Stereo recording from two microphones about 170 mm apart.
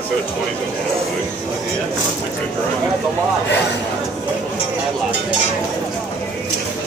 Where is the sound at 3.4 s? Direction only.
90° left.